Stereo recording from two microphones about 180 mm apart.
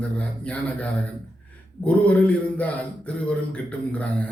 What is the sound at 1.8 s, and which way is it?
A man's voice, 5° left (ahead or behind).